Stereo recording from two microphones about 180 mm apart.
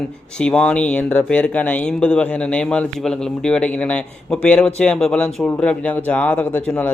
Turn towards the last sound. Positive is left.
turn(degrees=10)  # may be behind; listen again after turning